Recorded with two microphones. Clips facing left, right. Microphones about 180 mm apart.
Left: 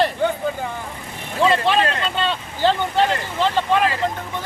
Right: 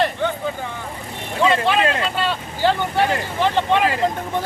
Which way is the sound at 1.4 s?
Centre (ahead or behind).